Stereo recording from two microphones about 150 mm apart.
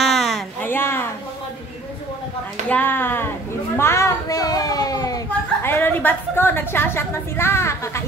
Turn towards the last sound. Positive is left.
turn(degrees=20)  # may be behind; listen again after turning